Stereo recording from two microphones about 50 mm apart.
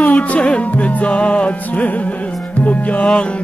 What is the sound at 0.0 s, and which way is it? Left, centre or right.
Music, left.